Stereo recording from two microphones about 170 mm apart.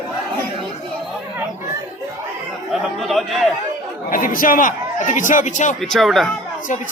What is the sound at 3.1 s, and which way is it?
Speech, centre (ahead or behind).